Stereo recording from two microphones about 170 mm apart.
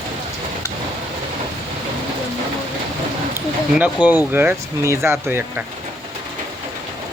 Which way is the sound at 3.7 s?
10° right (ahead or behind).